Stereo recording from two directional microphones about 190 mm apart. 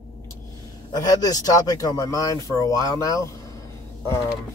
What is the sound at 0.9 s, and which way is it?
Speech, 20° left (ahead or behind).